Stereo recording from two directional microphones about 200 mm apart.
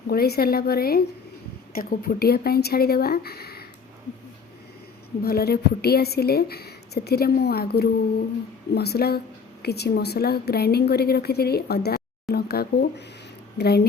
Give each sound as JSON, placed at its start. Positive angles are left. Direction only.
{"t": 0.1, "sound": "a woman's voice", "side_deg": 50}
{"t": 5.2, "sound": "a woman's voice", "side_deg": 50}